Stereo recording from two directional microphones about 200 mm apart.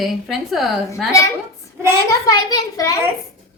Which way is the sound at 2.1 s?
15° left (ahead or behind).